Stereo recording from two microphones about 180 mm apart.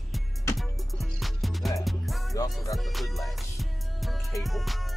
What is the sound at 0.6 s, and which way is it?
Music, centre (ahead or behind).